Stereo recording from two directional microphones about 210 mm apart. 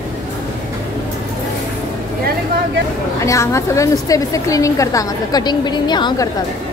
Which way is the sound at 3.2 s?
15° left (ahead or behind).